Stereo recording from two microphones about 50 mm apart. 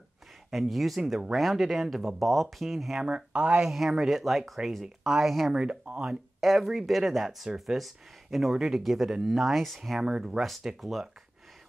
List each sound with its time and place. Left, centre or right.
0.5 s speech: centre
3.1 s speech: centre
3.7 s speech: centre
5.5 s speech: right
6.0 s speech: centre
9.9 s speech: centre
10.8 s speech: centre